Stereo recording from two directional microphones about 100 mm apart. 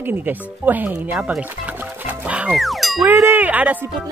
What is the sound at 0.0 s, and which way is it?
Speech, 20° right (ahead or behind).